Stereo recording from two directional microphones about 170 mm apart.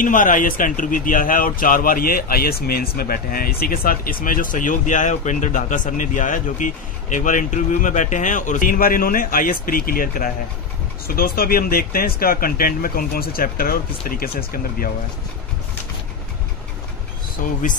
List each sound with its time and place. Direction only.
0.0 s speech: 50° left (ahead or behind)
17.4 s speech: 50° left (ahead or behind)